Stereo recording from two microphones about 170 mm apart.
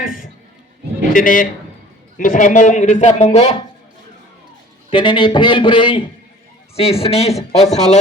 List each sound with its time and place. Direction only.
0.0 s a sound: 55° left (ahead or behind)
1.1 s a man's voice: 50° left (ahead or behind)
4.9 s a man's voice: 30° left (ahead or behind)